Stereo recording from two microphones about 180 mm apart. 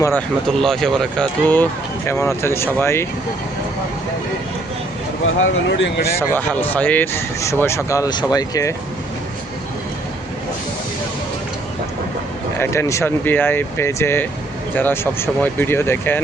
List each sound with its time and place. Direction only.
0.6 s speech: centre (ahead or behind)
5.2 s speech: 90° left
6.1 s speech: 10° left (ahead or behind)
12.5 s speech: 15° left (ahead or behind)